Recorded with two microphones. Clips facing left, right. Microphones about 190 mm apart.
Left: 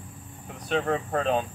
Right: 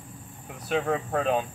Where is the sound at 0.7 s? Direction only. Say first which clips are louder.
Even; centre (ahead or behind).